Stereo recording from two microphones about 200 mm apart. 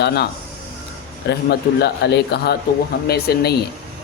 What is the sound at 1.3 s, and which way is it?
A man's voice, 55° left (ahead or behind).